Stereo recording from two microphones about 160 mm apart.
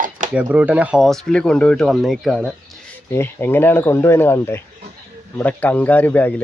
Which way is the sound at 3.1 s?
15° left (ahead or behind).